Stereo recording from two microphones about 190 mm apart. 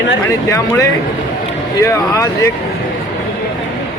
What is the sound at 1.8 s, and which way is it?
Speech, 15° left (ahead or behind).